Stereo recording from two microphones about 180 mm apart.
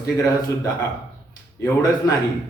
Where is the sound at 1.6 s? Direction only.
20° left (ahead or behind).